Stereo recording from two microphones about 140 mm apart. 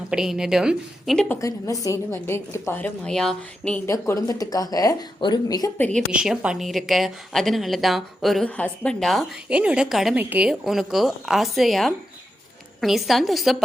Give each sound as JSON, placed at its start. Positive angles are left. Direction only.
{"t": 0.1, "sound": "a woman's voice", "side_deg": -5}
{"t": 1.4, "sound": "a woman's voice", "side_deg": 25}
{"t": 3.8, "sound": "speech", "side_deg": 20}
{"t": 5.7, "sound": "a woman's voice", "side_deg": 10}
{"t": 6.1, "sound": "a woman's voice", "side_deg": -5}